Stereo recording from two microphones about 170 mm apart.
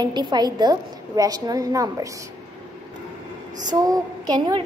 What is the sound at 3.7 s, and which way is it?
Speech, 20° right (ahead or behind).